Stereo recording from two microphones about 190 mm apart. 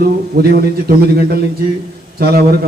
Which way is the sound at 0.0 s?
55° right (ahead or behind).